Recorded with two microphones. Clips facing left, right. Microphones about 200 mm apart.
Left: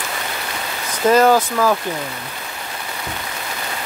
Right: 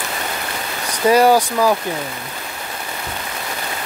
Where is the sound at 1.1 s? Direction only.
10° right (ahead or behind).